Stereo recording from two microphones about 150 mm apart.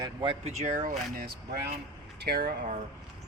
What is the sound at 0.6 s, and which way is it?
Speech, 65° right (ahead or behind).